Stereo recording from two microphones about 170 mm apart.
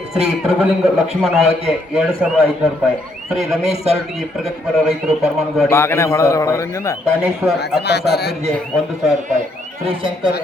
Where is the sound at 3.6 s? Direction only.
40° right (ahead or behind).